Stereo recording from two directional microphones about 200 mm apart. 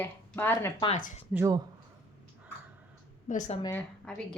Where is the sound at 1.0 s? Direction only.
40° left (ahead or behind).